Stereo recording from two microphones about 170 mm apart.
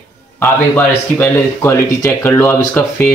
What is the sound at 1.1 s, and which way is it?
Speech, 15° left (ahead or behind).